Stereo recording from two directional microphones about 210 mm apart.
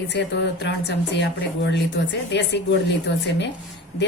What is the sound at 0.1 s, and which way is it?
Speech, 55° left (ahead or behind).